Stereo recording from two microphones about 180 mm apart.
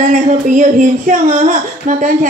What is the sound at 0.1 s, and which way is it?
A woman's voice, 45° right (ahead or behind).